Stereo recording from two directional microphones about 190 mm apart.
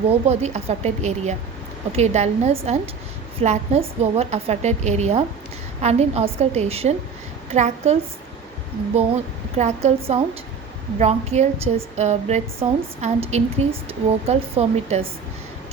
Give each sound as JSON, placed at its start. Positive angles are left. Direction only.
{"t": 0.1, "sound": "a woman's voice", "side_deg": -35}
{"t": 9.6, "sound": "a woman's voice", "side_deg": -35}